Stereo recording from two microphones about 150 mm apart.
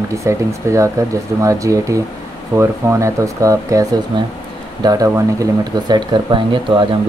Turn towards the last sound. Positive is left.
turn(degrees=-35)  # may be behind; listen again after turning